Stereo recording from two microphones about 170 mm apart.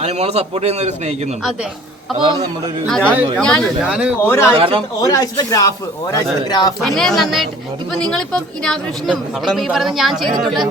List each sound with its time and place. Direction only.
0.0 s a man's voice: 40° right (ahead or behind)
2.1 s a man's voice: 30° right (ahead or behind)
3.0 s speech: 10° right (ahead or behind)
3.3 s a woman's voice: 5° left (ahead or behind)
4.3 s speech: 15° left (ahead or behind)
4.5 s a man's voice: 30° right (ahead or behind)
4.9 s speech: 20° left (ahead or behind)
6.8 s a woman's voice: centre (ahead or behind)